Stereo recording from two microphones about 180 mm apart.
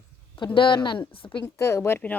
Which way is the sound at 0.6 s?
25° left (ahead or behind).